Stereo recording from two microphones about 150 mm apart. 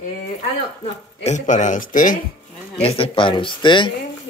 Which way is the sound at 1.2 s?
55° left (ahead or behind).